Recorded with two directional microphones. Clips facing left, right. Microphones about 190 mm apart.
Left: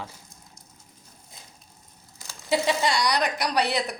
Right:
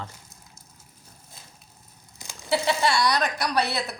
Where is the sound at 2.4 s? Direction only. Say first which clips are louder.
Even; 15° left (ahead or behind).